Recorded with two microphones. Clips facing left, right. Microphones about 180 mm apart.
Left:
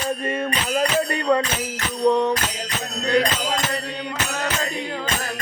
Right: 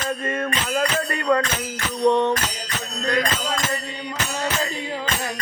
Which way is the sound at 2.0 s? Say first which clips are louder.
Even; centre (ahead or behind).